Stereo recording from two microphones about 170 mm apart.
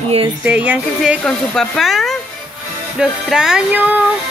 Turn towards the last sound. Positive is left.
turn(degrees=-10)  # may be behind; listen again after turning